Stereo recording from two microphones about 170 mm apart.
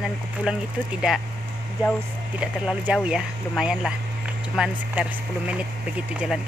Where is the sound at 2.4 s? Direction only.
5° right (ahead or behind).